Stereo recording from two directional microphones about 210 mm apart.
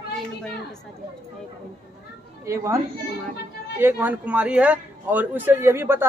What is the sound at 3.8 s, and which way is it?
A man's voice, 10° right (ahead or behind).